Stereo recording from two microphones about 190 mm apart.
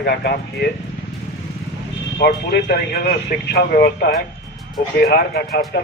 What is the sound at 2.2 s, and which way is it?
Speech, 55° left (ahead or behind).